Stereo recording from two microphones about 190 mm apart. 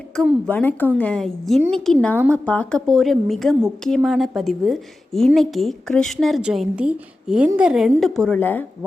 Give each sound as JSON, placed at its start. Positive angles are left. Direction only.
{"t": 0.2, "sound": "a woman's voice", "side_deg": 5}